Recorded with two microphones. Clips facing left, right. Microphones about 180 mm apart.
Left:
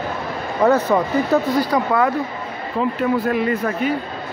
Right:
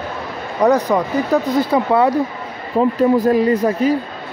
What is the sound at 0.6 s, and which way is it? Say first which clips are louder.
Speech: right 1 dB; 15° right (ahead or behind).